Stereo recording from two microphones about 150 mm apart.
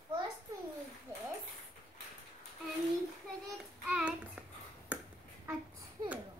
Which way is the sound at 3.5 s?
5° right (ahead or behind).